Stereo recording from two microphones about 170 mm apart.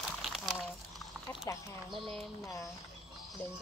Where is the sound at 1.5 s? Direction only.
15° left (ahead or behind).